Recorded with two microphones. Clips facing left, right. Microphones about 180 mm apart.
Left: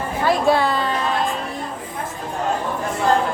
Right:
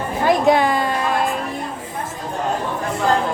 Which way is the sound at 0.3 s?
15° right (ahead or behind).